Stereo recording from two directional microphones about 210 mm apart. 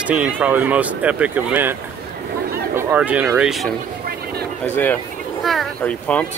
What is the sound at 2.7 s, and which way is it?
Speech, 10° right (ahead or behind).